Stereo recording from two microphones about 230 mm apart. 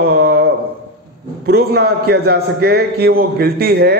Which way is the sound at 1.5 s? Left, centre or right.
Right.